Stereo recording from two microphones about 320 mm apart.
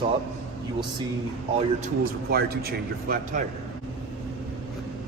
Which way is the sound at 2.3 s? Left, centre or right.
Right.